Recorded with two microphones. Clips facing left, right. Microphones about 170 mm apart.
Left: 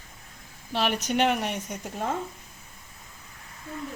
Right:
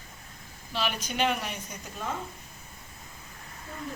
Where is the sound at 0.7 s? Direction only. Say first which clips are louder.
Left 5 dB; 60° left (ahead or behind).